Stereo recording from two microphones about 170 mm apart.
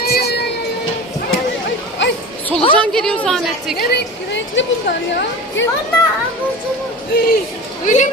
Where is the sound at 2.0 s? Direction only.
90° left.